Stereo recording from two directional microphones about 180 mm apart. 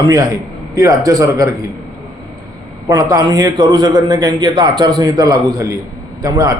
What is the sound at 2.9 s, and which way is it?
A man's voice, 20° right (ahead or behind).